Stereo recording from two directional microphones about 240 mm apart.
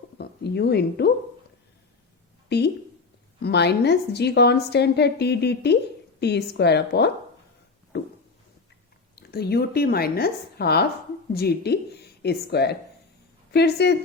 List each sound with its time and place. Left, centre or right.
0.2 s a woman's voice: left
3.4 s a woman's voice: left
7.9 s a sound: left
9.1 s a woman's voice: left